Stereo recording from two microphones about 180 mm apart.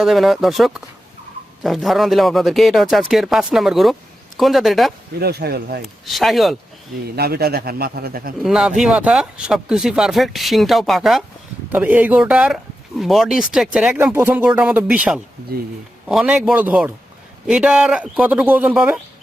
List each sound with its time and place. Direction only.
0.0 s speech: centre (ahead or behind)
5.2 s a man's voice: 65° right (ahead or behind)
6.1 s speech: centre (ahead or behind)
7.2 s a man's voice: 60° right (ahead or behind)
8.4 s speech: 5° right (ahead or behind)